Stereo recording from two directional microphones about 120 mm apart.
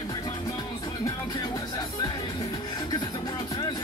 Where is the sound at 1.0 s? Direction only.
30° left (ahead or behind).